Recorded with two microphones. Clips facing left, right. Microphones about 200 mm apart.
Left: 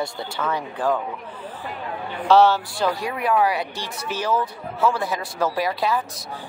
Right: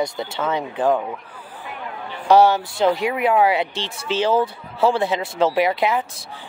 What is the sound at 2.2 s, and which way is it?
Speech, 15° right (ahead or behind).